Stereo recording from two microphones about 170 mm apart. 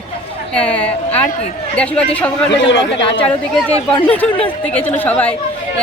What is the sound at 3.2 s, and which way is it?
A man's voice, centre (ahead or behind).